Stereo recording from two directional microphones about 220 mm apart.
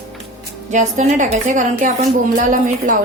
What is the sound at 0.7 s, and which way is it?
A woman's voice, 35° right (ahead or behind).